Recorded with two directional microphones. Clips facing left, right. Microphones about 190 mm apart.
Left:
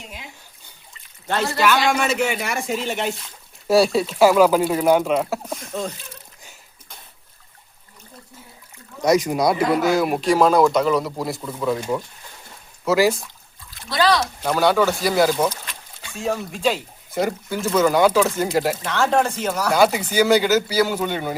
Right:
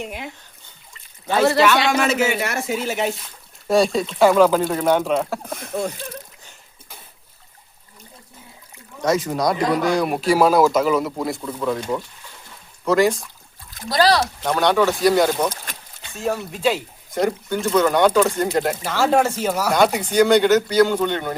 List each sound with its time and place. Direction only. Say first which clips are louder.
0.0 s speech: right 9 dB; 60° right (ahead or behind)
1.5 s speech: right 2 dB; centre (ahead or behind)
9.0 s speech: left 2 dB; 15° left (ahead or behind)
13.8 s speech: right 2 dB; 35° right (ahead or behind)
14.4 s speech: left 1 dB; 5° left (ahead or behind)
19.7 s speech: even; 5° left (ahead or behind)